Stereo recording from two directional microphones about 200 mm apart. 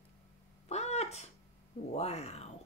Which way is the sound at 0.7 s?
35° left (ahead or behind).